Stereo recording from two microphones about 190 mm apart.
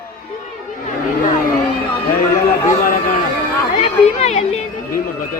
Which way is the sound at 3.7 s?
35° left (ahead or behind).